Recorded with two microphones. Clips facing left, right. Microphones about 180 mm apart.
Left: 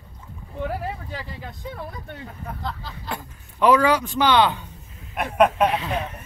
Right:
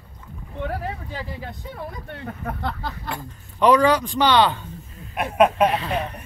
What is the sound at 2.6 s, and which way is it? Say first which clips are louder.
Speech: right 4 dB; 60° right (ahead or behind).